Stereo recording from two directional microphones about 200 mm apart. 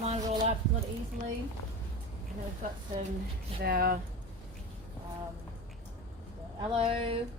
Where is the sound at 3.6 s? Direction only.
50° right (ahead or behind).